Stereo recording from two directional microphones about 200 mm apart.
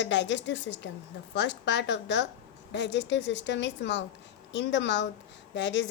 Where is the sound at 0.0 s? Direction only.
60° left (ahead or behind).